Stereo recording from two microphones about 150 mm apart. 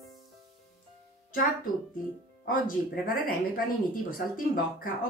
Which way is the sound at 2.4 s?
80° left.